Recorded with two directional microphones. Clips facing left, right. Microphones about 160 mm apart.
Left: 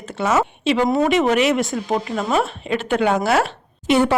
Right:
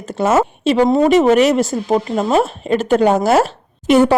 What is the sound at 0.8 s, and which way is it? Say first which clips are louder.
Speech: right 5 dB; 25° right (ahead or behind).